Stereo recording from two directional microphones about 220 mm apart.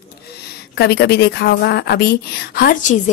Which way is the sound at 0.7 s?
50° left (ahead or behind).